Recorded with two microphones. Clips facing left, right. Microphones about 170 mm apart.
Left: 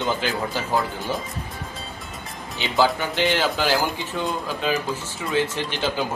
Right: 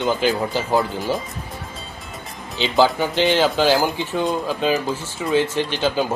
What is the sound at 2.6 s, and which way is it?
Speech, 20° right (ahead or behind).